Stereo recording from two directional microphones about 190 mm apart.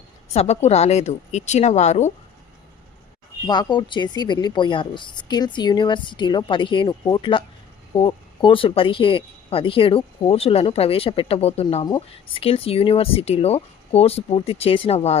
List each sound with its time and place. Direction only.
0.3 s speech: 35° left (ahead or behind)
3.4 s speech: 20° left (ahead or behind)